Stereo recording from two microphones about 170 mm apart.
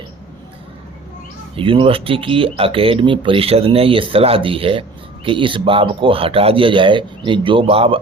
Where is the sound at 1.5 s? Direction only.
30° right (ahead or behind).